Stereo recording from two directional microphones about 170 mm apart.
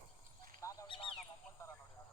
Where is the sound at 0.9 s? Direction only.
30° left (ahead or behind).